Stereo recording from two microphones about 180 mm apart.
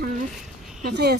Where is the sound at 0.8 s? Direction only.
65° right (ahead or behind).